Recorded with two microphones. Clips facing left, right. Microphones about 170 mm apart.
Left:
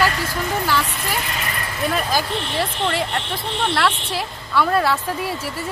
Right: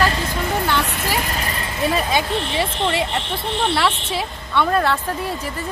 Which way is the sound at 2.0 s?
Centre (ahead or behind).